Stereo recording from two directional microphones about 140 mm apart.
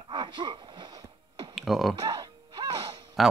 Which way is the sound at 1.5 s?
Centre (ahead or behind).